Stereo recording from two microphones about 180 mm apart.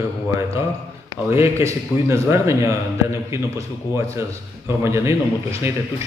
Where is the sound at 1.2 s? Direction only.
15° right (ahead or behind).